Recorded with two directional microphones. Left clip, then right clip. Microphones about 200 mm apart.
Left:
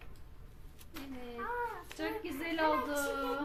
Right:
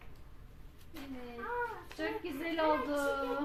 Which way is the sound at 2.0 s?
15° right (ahead or behind).